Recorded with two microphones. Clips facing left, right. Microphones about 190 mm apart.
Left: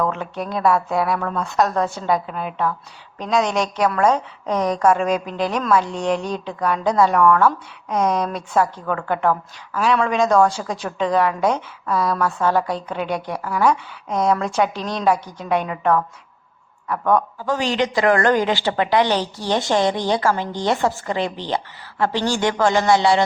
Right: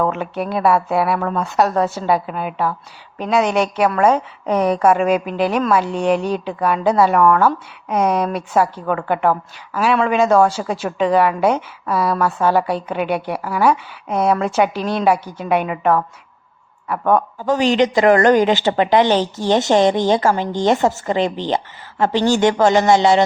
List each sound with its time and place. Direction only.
0.1 s a woman's voice: 5° right (ahead or behind)
17.4 s a woman's voice: 20° right (ahead or behind)